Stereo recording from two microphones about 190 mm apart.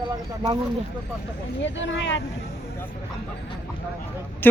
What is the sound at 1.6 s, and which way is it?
Speech, 75° left (ahead or behind).